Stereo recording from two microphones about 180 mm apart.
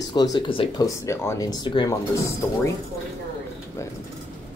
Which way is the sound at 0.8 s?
15° left (ahead or behind).